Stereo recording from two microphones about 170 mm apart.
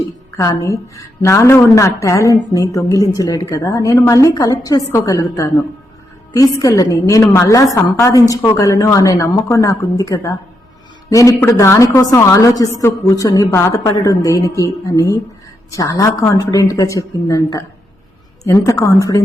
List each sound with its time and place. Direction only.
0.3 s a woman's voice: 20° left (ahead or behind)